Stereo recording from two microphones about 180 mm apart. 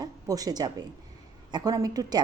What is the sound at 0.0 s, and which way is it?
A woman's voice, 20° right (ahead or behind).